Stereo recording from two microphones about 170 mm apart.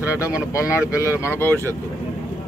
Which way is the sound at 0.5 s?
15° left (ahead or behind).